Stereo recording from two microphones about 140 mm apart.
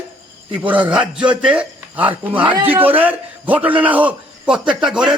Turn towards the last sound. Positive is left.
turn(degrees=-5)  # may be behind; listen again after turning